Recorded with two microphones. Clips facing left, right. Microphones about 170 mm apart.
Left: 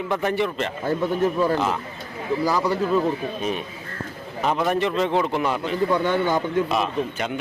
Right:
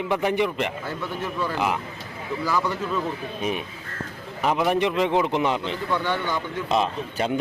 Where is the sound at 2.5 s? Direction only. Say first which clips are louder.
Left 3 dB; 35° left (ahead or behind).